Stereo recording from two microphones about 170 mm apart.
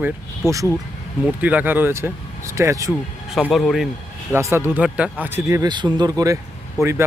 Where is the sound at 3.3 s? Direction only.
Centre (ahead or behind).